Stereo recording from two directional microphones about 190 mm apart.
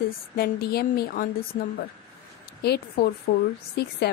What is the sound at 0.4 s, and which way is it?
A woman's voice, 55° left (ahead or behind).